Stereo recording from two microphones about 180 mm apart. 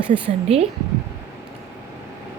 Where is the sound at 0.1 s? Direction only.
35° right (ahead or behind).